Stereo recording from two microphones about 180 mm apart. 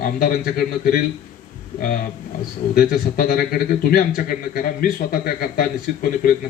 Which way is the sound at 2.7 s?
50° left (ahead or behind).